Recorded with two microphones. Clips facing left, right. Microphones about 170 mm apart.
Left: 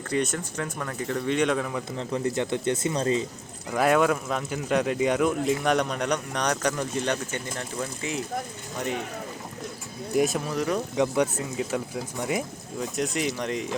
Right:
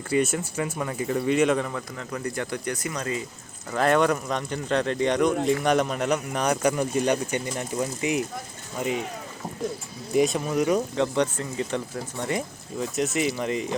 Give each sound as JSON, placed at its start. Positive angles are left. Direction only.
{"t": 0.1, "sound": "speech", "side_deg": -5}
{"t": 2.0, "sound": "speech", "side_deg": 25}
{"t": 3.7, "sound": "speech", "side_deg": 5}
{"t": 10.1, "sound": "speech", "side_deg": 0}
{"t": 10.5, "sound": "speech", "side_deg": -10}
{"t": 10.9, "sound": "speech", "side_deg": 10}